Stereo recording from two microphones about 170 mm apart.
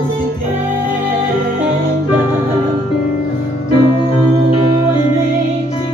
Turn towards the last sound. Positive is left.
turn(degrees=35)  # may be behind; listen again after turning